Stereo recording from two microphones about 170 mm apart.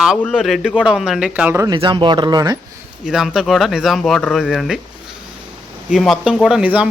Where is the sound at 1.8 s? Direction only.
30° right (ahead or behind).